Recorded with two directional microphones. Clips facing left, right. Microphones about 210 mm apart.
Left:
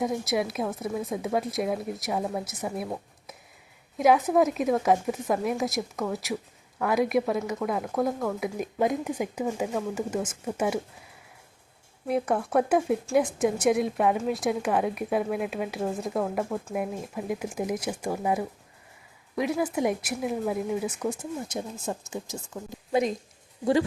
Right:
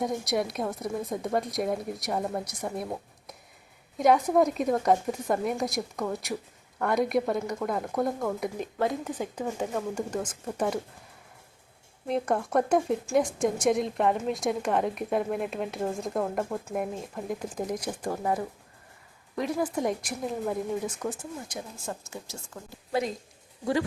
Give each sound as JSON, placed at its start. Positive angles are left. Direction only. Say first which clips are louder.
{"t": 0.0, "sound": "speech", "louder": "left 1 dB", "side_deg": 0}
{"t": 12.0, "sound": "speech", "louder": "left 1 dB", "side_deg": 5}
{"t": 21.4, "sound": "speech", "louder": "left 5 dB", "side_deg": 20}